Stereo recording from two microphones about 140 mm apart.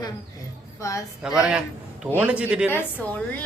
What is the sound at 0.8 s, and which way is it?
Speech, 20° left (ahead or behind).